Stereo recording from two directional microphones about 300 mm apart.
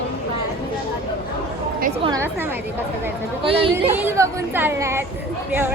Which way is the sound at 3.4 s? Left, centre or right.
Centre.